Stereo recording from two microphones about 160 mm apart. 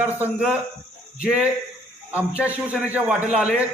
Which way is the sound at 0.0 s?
10° right (ahead or behind).